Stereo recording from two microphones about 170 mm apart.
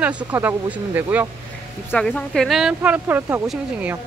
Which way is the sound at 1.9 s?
5° left (ahead or behind).